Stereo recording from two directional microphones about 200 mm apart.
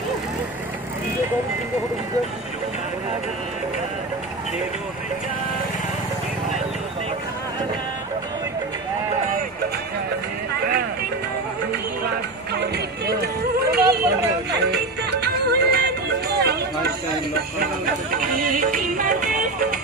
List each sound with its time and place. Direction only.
12.5 s music: 55° right (ahead or behind)
18.1 s music: 45° right (ahead or behind)